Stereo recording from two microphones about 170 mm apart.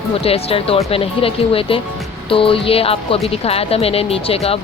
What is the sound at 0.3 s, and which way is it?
Speech, 35° left (ahead or behind).